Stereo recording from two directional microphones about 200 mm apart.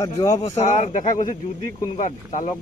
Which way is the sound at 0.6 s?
35° left (ahead or behind).